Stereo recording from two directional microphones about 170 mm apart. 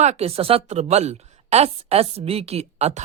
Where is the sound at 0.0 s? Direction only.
40° right (ahead or behind).